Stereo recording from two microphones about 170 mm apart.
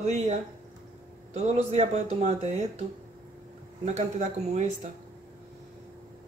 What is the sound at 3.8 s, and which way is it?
Speech, 40° right (ahead or behind).